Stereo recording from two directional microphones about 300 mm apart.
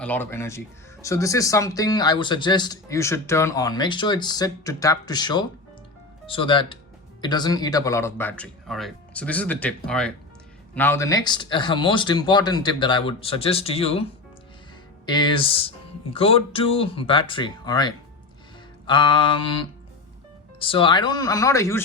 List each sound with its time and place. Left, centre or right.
0.0 s speech: centre